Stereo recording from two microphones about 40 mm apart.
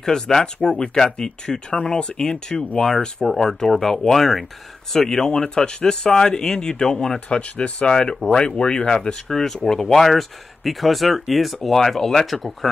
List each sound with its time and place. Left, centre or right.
0.0 s speech: centre
7.2 s speech: left
9.3 s speech: centre
10.0 s speech: centre